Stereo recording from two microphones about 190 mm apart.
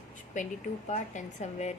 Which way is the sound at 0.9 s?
40° left (ahead or behind).